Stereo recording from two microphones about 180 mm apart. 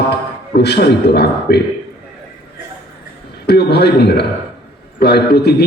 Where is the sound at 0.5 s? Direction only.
65° left (ahead or behind).